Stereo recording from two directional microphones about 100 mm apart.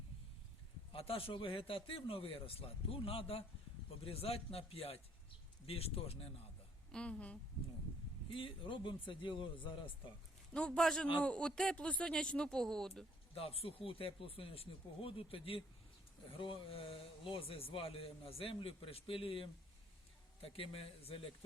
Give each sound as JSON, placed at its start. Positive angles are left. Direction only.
{"t": 0.9, "sound": "speech", "side_deg": 70}
{"t": 6.9, "sound": "speech", "side_deg": 10}
{"t": 8.3, "sound": "speech", "side_deg": 60}
{"t": 10.5, "sound": "speech", "side_deg": 10}
{"t": 13.3, "sound": "speech", "side_deg": 70}